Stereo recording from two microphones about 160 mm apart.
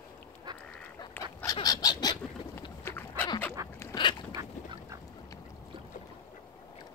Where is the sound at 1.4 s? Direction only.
25° left (ahead or behind).